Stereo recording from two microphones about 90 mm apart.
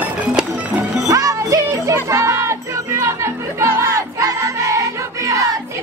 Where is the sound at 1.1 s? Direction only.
40° right (ahead or behind).